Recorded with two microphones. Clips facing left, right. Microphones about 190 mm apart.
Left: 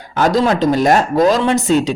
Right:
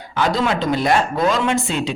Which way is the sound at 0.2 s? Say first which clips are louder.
Left 5 dB; 40° left (ahead or behind).